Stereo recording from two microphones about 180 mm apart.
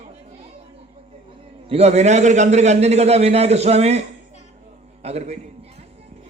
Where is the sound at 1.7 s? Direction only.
35° right (ahead or behind).